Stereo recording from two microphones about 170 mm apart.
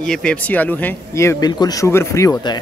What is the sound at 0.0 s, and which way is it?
Speech, 5° left (ahead or behind).